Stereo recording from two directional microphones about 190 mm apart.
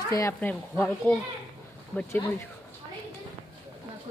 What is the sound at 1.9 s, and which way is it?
Speech, 5° left (ahead or behind).